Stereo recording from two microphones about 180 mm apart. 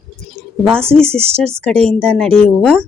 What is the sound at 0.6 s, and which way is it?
Speech, 5° left (ahead or behind).